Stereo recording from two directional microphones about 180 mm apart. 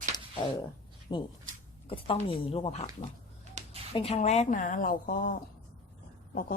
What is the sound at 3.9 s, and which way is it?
Speech, 35° left (ahead or behind).